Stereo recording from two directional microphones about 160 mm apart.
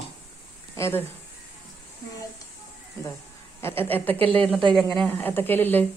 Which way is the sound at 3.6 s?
15° left (ahead or behind).